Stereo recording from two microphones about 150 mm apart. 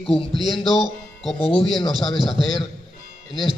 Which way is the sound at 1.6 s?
Centre (ahead or behind).